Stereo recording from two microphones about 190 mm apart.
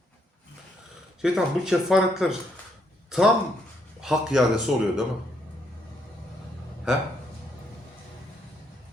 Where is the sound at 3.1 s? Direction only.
Centre (ahead or behind).